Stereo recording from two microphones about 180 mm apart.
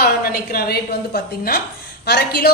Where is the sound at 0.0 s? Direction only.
55° left (ahead or behind).